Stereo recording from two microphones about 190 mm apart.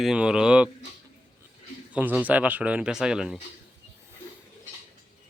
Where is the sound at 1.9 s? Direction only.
5° right (ahead or behind).